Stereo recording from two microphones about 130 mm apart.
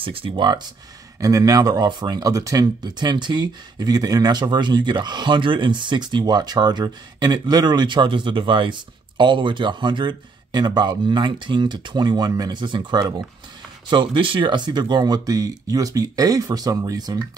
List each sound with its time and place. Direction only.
0.0 s speech: 45° right (ahead or behind)
1.2 s speech: 25° right (ahead or behind)